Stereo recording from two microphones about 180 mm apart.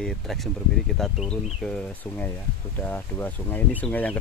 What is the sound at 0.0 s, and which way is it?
Speech, centre (ahead or behind).